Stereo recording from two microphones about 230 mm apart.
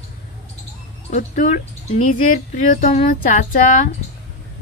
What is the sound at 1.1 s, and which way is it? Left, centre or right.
A woman's voice, left.